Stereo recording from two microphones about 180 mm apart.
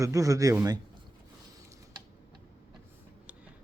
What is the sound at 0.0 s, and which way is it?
Speech, 20° right (ahead or behind).